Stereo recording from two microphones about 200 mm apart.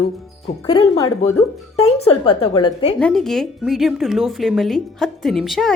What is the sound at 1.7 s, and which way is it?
A woman's voice, 30° left (ahead or behind).